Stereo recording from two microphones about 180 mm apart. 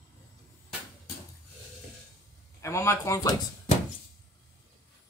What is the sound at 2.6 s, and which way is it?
Speech, 15° left (ahead or behind).